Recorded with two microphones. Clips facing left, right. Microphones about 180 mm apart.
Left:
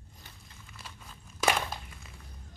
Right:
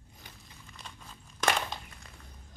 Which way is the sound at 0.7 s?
5° left (ahead or behind).